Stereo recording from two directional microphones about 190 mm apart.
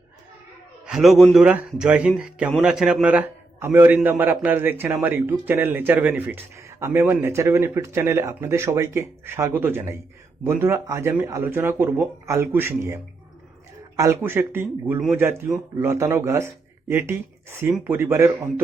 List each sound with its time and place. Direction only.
0.9 s a man's voice: centre (ahead or behind)